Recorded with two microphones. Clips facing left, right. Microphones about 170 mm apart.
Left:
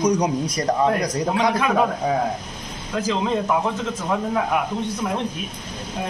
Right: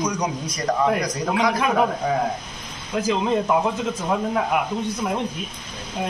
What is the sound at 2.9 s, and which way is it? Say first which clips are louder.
Speech: right 1 dB; 15° right (ahead or behind).